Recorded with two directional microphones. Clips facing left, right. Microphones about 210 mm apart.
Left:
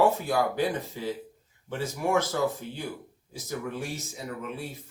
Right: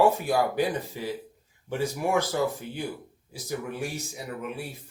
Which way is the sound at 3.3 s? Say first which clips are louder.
Right 1 dB; 15° right (ahead or behind).